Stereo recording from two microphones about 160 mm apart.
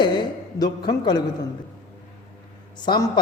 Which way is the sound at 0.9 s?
25° left (ahead or behind).